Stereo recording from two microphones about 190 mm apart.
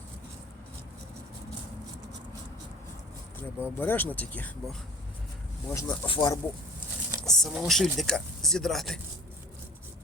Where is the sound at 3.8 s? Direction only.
10° left (ahead or behind).